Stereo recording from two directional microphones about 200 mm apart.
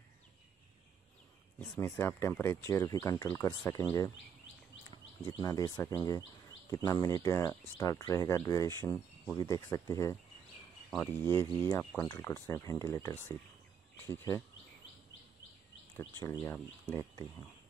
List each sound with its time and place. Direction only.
1.8 s speech: 10° left (ahead or behind)
5.4 s speech: 15° left (ahead or behind)
16.0 s speech: 10° left (ahead or behind)